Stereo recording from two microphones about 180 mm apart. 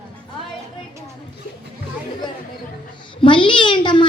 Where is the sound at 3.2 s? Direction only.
25° left (ahead or behind).